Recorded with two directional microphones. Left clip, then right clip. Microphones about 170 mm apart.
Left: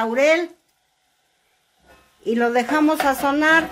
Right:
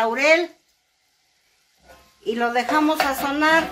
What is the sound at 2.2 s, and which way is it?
A woman's voice, 65° left (ahead or behind).